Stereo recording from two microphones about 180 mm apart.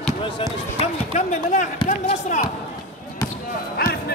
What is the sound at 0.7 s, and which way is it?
Basketball bounce, 35° left (ahead or behind).